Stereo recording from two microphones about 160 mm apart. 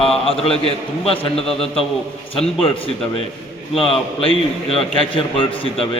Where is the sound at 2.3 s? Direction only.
35° left (ahead or behind).